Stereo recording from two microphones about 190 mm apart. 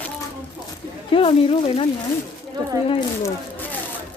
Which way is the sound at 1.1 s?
30° left (ahead or behind).